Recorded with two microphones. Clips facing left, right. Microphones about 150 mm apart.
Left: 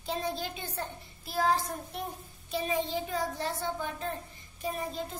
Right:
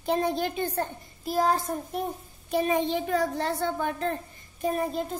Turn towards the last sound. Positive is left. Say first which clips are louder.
# right 8 dB
turn(degrees=-50)  # may be behind; listen again after turning